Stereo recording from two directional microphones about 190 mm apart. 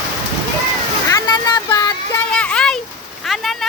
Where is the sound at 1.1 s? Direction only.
20° left (ahead or behind).